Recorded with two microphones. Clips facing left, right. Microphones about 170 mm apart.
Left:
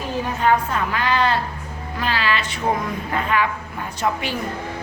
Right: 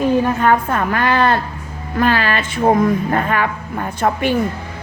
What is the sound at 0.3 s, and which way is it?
A woman's voice, 50° right (ahead or behind).